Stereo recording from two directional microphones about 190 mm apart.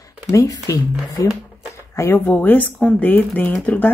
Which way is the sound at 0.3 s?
15° left (ahead or behind).